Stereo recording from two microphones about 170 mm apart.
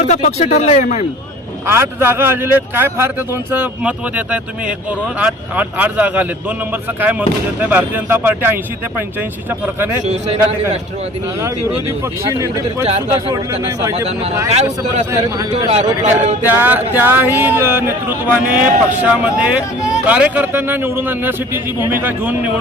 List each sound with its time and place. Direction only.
0.0 s speech: 40° left (ahead or behind)
1.6 s speech: 15° right (ahead or behind)
10.0 s a man's voice: 40° right (ahead or behind)
12.8 s a man's voice: 35° right (ahead or behind)
14.5 s a man's voice: 40° right (ahead or behind)
16.4 s speech: 10° right (ahead or behind)